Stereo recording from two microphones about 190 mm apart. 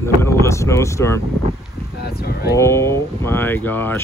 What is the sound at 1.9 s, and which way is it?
Speech, 55° left (ahead or behind).